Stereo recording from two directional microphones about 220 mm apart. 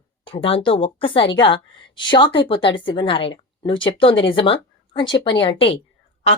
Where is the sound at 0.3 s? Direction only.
25° left (ahead or behind).